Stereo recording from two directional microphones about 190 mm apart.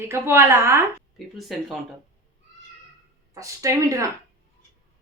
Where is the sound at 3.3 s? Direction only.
15° right (ahead or behind).